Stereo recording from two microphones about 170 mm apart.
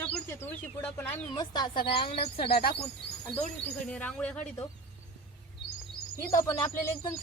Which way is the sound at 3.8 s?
5° left (ahead or behind).